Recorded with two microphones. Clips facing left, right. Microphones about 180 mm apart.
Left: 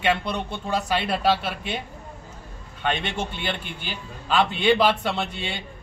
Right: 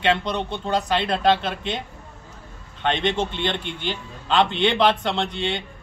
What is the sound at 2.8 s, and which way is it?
A man's voice, 10° left (ahead or behind).